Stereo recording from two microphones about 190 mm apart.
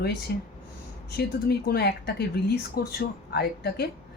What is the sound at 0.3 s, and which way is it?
Speech, 55° left (ahead or behind).